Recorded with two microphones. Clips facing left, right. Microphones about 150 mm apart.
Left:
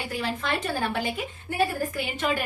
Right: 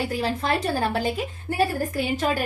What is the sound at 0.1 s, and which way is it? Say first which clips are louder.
A woman's voice: right 4 dB; 35° right (ahead or behind).